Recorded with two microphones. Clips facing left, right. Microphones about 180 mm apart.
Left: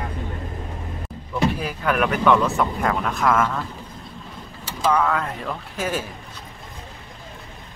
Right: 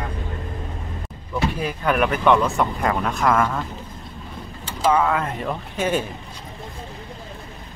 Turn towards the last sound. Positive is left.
turn(degrees=0)  # may be behind; listen again after turning